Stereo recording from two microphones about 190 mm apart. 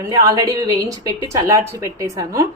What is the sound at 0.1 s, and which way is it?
A woman's voice, 20° right (ahead or behind).